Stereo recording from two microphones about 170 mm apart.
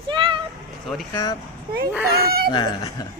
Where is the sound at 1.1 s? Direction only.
20° left (ahead or behind).